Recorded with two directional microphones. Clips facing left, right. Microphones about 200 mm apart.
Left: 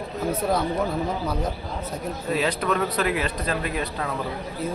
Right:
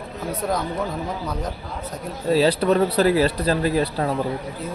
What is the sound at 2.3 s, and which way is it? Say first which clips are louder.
Speech: right 7 dB; 30° right (ahead or behind).